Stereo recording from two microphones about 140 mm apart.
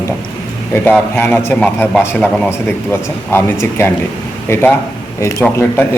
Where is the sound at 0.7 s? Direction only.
15° left (ahead or behind).